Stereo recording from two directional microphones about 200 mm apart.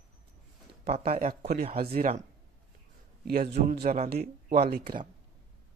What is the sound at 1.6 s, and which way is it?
Speech, 30° right (ahead or behind).